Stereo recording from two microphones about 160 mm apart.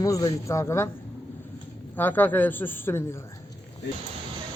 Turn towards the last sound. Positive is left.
turn(degrees=15)  # may be behind; listen again after turning